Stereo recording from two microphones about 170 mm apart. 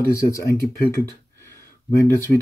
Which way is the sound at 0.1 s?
20° left (ahead or behind).